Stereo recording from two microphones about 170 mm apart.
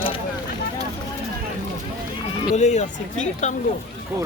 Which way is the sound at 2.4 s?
40° left (ahead or behind).